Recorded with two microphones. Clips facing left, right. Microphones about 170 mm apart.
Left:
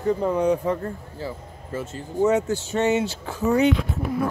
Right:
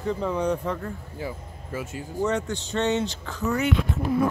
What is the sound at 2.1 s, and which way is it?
Speech, 5° left (ahead or behind).